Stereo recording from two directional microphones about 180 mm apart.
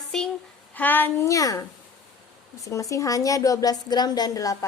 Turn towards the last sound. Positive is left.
turn(degrees=20)  # may be behind; listen again after turning